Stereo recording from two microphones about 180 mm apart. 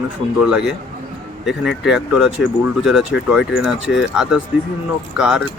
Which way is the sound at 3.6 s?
5° right (ahead or behind).